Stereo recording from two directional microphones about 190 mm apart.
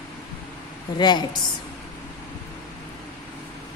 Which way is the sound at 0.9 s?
25° left (ahead or behind).